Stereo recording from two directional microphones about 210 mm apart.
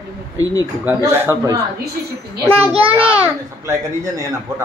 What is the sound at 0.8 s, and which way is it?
A child's voice, 10° right (ahead or behind).